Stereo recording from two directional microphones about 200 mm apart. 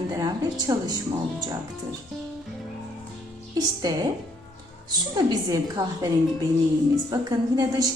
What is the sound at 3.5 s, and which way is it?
A woman's voice, 20° right (ahead or behind).